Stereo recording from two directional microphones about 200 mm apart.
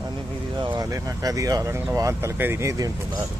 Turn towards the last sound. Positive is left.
turn(degrees=-15)  # may be behind; listen again after turning